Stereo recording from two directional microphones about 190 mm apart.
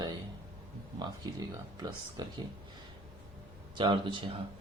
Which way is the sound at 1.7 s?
20° right (ahead or behind).